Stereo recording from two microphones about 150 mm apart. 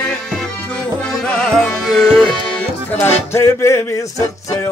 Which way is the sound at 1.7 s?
5° left (ahead or behind).